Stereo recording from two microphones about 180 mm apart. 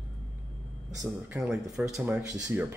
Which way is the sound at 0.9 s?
20° right (ahead or behind).